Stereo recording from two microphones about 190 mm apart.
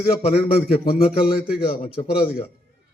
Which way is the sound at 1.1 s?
50° left (ahead or behind).